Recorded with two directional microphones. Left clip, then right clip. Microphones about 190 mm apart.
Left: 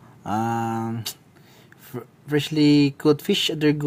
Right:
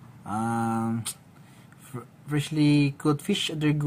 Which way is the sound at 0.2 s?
50° left (ahead or behind).